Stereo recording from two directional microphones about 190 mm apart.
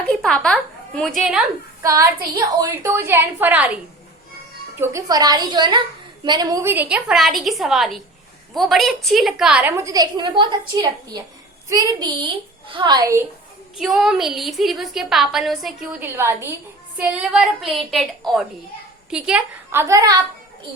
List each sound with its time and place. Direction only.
0.1 s a woman's voice: 5° left (ahead or behind)
1.8 s a woman's voice: 15° right (ahead or behind)
4.8 s a woman's voice: 15° right (ahead or behind)
13.7 s a woman's voice: centre (ahead or behind); by 20.1 s 15° right (ahead or behind)